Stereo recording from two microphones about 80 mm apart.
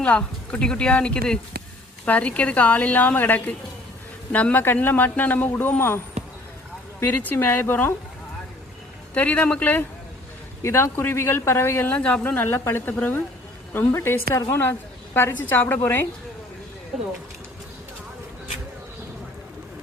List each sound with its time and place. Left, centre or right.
0.0 s a woman's voice: centre
7.0 s a woman's voice: left
9.1 s a woman's voice: centre
10.6 s a man's voice: left
11.9 s a woman's voice: centre